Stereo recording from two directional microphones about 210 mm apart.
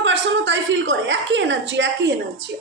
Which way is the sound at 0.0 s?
60° right (ahead or behind).